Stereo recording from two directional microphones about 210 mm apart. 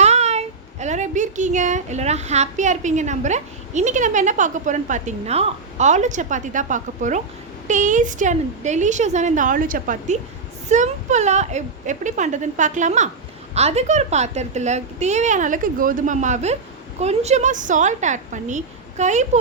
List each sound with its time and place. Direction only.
0.0 s a child's voice: 30° right (ahead or behind)